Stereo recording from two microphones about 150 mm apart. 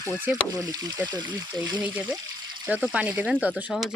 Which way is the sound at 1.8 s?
10° right (ahead or behind).